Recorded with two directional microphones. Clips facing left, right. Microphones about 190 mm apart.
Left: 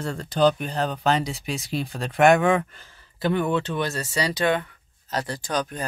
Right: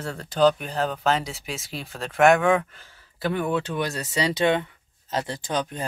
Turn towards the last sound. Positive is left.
turn(degrees=-20)  # may be behind; listen again after turning